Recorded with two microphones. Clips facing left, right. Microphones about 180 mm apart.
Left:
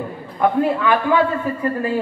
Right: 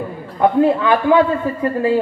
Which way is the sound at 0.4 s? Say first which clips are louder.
Right 4 dB; 20° right (ahead or behind).